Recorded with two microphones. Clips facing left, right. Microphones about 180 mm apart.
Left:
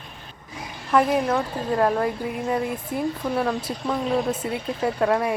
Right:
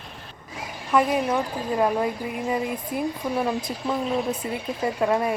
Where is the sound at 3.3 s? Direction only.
10° right (ahead or behind).